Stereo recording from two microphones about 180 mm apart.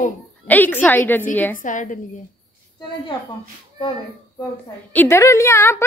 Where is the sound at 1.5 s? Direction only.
45° left (ahead or behind).